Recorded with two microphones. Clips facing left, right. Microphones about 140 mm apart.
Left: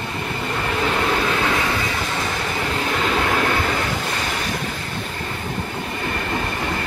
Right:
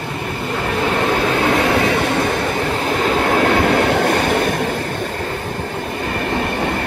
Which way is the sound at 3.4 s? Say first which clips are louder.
Right 7 dB; 65° right (ahead or behind).